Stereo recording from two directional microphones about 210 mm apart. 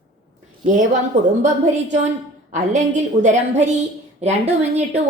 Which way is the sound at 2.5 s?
35° right (ahead or behind).